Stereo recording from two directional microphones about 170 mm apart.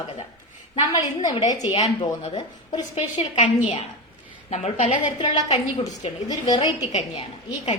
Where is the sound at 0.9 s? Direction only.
20° left (ahead or behind).